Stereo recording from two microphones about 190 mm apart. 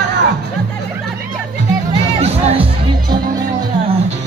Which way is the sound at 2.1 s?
35° right (ahead or behind).